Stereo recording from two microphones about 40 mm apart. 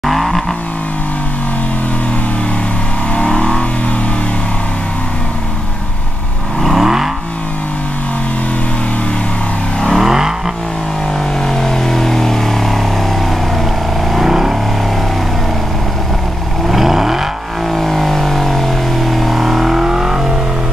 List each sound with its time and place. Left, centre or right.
0.0 s vehicle: centre
3.2 s vehicle: left
6.6 s vehicle: centre
9.9 s vehicle: centre
11.4 s vehicle: centre
14.1 s vehicle: centre
16.6 s vehicle: centre
17.7 s vehicle: centre